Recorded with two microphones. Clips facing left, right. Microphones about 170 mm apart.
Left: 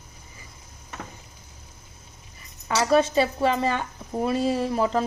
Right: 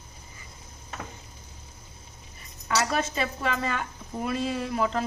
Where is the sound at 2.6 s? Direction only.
30° left (ahead or behind).